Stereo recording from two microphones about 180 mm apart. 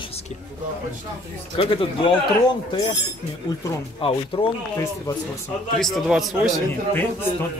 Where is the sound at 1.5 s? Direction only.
30° left (ahead or behind).